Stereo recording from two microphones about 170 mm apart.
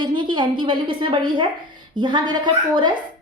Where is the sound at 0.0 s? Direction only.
30° right (ahead or behind).